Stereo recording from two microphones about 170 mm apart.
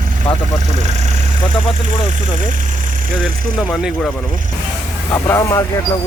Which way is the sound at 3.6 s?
Centre (ahead or behind).